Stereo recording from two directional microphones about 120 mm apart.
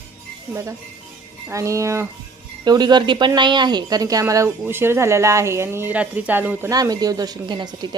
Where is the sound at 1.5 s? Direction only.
25° right (ahead or behind).